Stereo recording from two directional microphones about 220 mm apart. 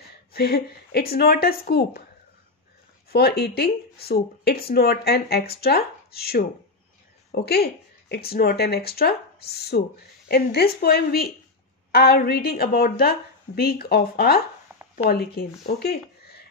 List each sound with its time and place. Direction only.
0.3 s speech: 45° left (ahead or behind)
3.1 s speech: 45° left (ahead or behind)
14.7 s a sound: 10° right (ahead or behind)
15.0 s speech: 45° left (ahead or behind)